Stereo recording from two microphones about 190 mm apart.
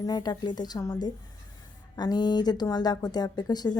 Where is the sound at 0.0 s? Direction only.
20° left (ahead or behind).